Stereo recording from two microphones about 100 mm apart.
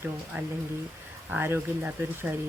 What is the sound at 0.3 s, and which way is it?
Speech, 20° right (ahead or behind).